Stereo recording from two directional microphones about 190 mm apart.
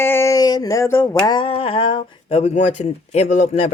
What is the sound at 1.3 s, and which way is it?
Speech, 30° left (ahead or behind).